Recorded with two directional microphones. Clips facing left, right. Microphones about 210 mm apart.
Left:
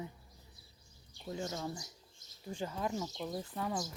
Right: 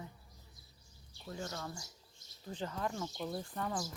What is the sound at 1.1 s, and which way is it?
Speech, 20° left (ahead or behind).